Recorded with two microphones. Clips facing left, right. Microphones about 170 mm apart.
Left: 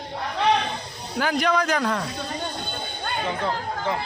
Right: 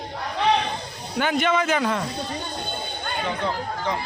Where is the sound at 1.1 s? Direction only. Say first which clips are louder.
Right 1 dB; centre (ahead or behind).